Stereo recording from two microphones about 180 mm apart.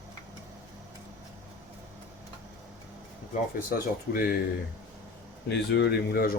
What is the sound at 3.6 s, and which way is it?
Speech, 55° left (ahead or behind).